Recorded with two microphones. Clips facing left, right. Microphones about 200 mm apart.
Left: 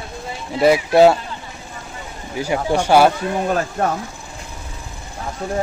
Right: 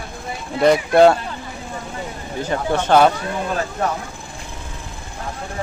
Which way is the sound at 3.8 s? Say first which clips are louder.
Left 1 dB; 50° left (ahead or behind).